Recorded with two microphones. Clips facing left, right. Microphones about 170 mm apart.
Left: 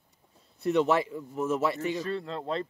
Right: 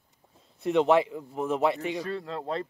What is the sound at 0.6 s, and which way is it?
A man's voice, 40° left (ahead or behind).